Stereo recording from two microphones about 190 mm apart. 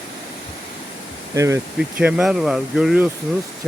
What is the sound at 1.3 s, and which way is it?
Speech, 15° right (ahead or behind).